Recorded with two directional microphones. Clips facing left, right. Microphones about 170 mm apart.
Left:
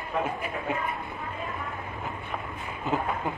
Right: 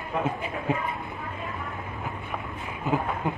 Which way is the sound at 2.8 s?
15° right (ahead or behind).